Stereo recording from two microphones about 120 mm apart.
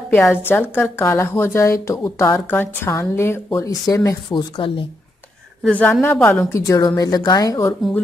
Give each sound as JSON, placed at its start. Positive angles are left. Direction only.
{"t": 0.1, "sound": "a woman's voice", "side_deg": 20}
{"t": 4.6, "sound": "speech", "side_deg": 45}
{"t": 5.6, "sound": "a woman's voice", "side_deg": 10}
{"t": 6.5, "sound": "speech", "side_deg": 30}